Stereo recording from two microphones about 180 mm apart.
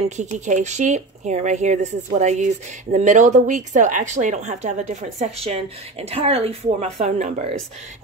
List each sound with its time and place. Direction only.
0.2 s speech: 40° right (ahead or behind)